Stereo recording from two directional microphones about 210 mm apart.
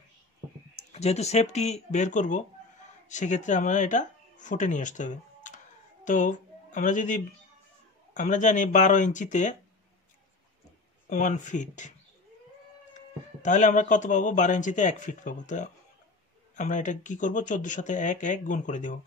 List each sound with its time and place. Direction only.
0.9 s speech: 30° left (ahead or behind)
11.1 s speech: 35° left (ahead or behind)
12.9 s speech: 35° left (ahead or behind)